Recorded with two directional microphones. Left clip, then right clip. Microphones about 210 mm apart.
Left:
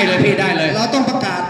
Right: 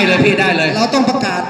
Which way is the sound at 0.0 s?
15° right (ahead or behind).